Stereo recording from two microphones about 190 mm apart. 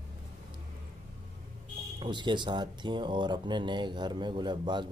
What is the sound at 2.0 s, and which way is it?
Speech, 25° right (ahead or behind).